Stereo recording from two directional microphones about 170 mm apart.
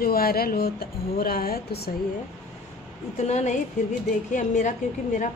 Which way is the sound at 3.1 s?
40° left (ahead or behind).